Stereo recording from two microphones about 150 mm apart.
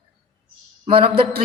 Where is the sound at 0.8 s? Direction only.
35° right (ahead or behind).